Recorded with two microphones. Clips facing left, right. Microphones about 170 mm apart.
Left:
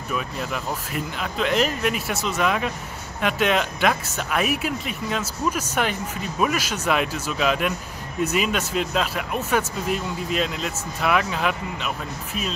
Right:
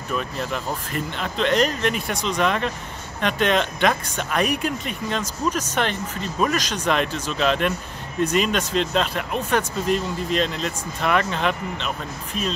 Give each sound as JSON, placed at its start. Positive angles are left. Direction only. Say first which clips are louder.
{"t": 0.1, "sound": "speech", "louder": "right 2 dB", "side_deg": 5}